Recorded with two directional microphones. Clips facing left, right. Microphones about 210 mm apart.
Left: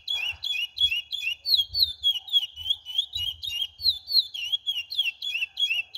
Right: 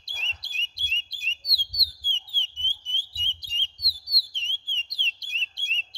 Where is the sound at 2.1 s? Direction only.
5° left (ahead or behind).